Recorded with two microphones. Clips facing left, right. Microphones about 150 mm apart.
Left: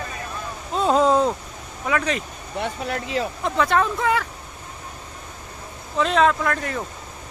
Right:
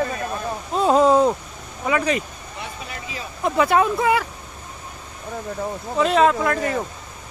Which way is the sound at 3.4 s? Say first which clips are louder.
Right 4 dB; 10° right (ahead or behind).